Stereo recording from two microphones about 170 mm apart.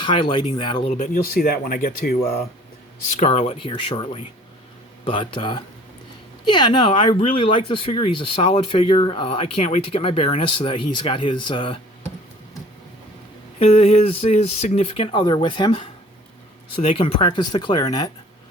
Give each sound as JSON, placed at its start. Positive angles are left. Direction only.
{"t": 0.0, "sound": "speech", "side_deg": 30}
{"t": 1.1, "sound": "speech", "side_deg": 60}
{"t": 3.2, "sound": "speech", "side_deg": 40}
{"t": 13.6, "sound": "speech", "side_deg": 35}